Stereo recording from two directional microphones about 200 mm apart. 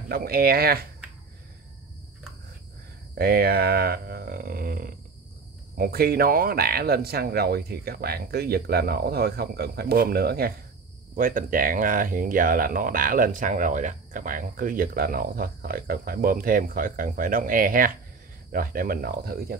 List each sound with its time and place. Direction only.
0.1 s speech: 50° right (ahead or behind)
3.2 s speech: 50° right (ahead or behind)